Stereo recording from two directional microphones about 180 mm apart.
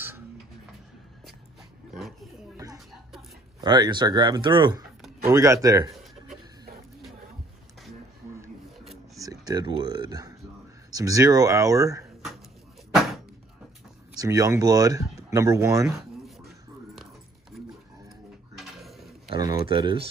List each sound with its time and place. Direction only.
2.5 s chuckle: 20° right (ahead or behind)
3.6 s speech: 25° right (ahead or behind)
8.7 s filing: centre (ahead or behind)
9.2 s speech: 20° right (ahead or behind)
14.1 s speech: 20° right (ahead or behind)
16.2 s a sound: centre (ahead or behind)
19.2 s a sound: 20° right (ahead or behind)